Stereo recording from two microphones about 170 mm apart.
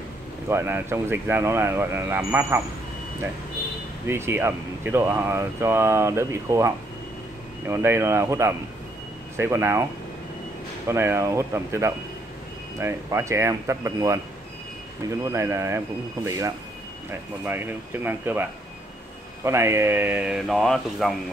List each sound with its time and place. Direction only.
0.5 s speech: 15° right (ahead or behind)
4.1 s speech: 15° right (ahead or behind)
10.9 s speech: 15° right (ahead or behind)
15.2 s speech: 15° right (ahead or behind); by 21.2 s centre (ahead or behind)